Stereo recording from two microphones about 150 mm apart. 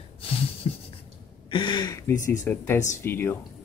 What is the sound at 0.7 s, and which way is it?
Speech, 40° left (ahead or behind).